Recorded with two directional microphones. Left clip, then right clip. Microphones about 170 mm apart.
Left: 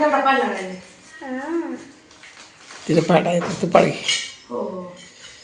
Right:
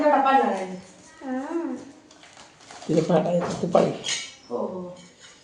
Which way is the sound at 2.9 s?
25° left (ahead or behind).